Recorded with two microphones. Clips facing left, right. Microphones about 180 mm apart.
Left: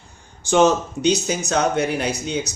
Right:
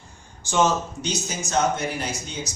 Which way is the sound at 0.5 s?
65° left (ahead or behind).